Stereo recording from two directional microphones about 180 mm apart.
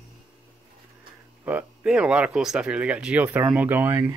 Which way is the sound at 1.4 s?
10° right (ahead or behind).